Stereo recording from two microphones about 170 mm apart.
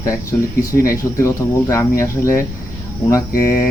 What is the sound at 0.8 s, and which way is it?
Speech, 20° left (ahead or behind).